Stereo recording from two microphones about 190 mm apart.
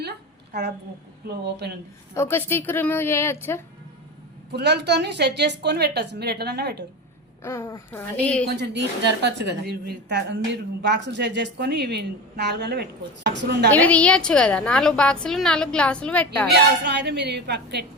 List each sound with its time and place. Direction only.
1.3 s a woman's voice: 60° right (ahead or behind)
2.1 s a woman's voice: 10° left (ahead or behind)
4.5 s a woman's voice: 60° right (ahead or behind)
7.4 s a woman's voice: 15° left (ahead or behind)
8.4 s a woman's voice: 60° right (ahead or behind)
13.7 s a woman's voice: 10° left (ahead or behind)
16.5 s a woman's voice: 60° right (ahead or behind)